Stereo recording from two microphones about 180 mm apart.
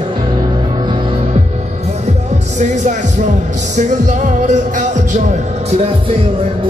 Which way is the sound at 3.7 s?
45° right (ahead or behind).